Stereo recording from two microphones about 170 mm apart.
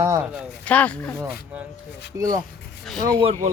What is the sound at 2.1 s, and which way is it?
Speech, 15° right (ahead or behind).